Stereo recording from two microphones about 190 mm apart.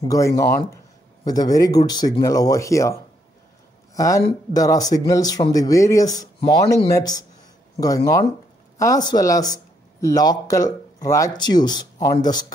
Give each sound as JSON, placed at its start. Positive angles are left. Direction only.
{"t": 0.1, "sound": "speech", "side_deg": 15}